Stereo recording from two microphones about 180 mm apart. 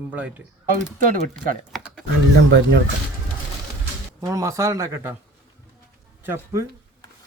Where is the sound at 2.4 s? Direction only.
75° right (ahead or behind).